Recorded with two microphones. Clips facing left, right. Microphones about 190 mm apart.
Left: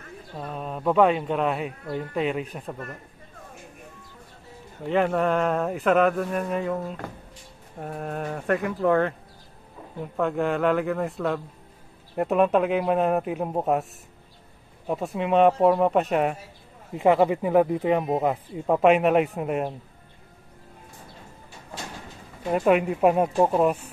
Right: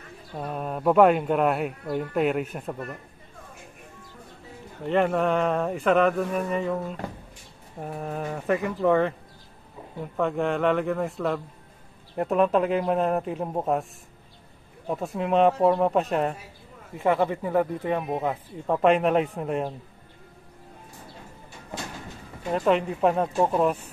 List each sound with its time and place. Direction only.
0.4 s speech: 5° right (ahead or behind)
4.8 s speech: centre (ahead or behind)
10.1 s speech: centre (ahead or behind)
14.9 s speech: centre (ahead or behind)
16.9 s speech: 20° left (ahead or behind)
22.5 s speech: 10° left (ahead or behind)